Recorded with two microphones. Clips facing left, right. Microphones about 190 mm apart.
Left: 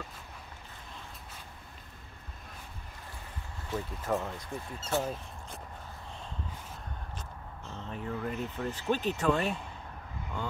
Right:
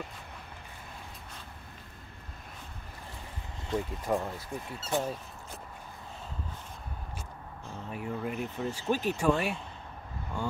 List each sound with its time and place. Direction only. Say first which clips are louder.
3.7 s speech: right 2 dB; 15° right (ahead or behind)
7.6 s vehicle: right 1 dB; 10° right (ahead or behind)
8.9 s speech: right 1 dB; 10° right (ahead or behind)